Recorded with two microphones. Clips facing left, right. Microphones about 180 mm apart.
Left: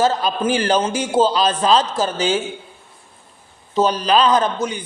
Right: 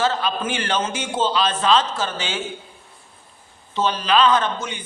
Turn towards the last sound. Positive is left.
turn(degrees=35)  # may be behind; listen again after turning